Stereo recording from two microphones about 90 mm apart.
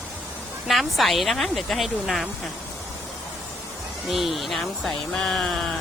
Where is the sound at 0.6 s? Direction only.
Centre (ahead or behind).